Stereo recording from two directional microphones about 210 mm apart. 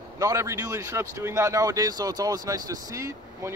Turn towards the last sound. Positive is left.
turn(degrees=-15)  # may be behind; listen again after turning